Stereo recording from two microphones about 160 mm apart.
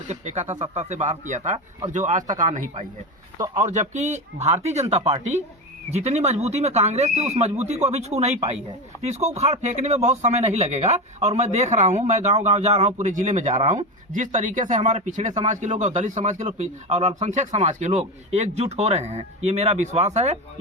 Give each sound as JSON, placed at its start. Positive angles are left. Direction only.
{"t": 0.1, "sound": "speech", "side_deg": -45}